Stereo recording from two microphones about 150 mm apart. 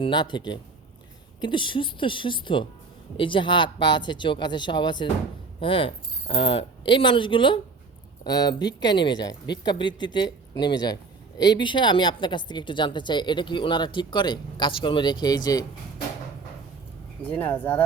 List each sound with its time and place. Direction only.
0.0 s a woman's voice: 30° left (ahead or behind)
17.2 s speech: 10° left (ahead or behind)